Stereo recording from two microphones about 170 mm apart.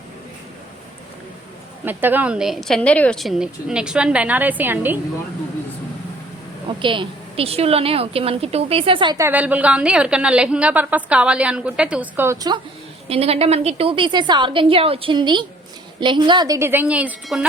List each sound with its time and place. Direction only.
1.8 s a woman's voice: 10° right (ahead or behind)
6.7 s a woman's voice: 30° right (ahead or behind)
9.1 s a woman's voice: 10° right (ahead or behind)
13.1 s a woman's voice: 35° right (ahead or behind); by 17.4 s 5° right (ahead or behind)